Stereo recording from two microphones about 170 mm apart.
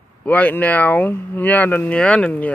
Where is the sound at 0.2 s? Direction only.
10° left (ahead or behind).